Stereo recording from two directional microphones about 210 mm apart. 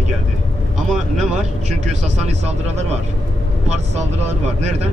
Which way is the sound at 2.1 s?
30° right (ahead or behind).